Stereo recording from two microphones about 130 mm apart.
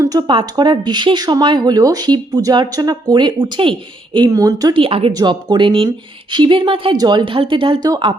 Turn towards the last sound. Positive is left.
turn(degrees=-40)  # may be behind; listen again after turning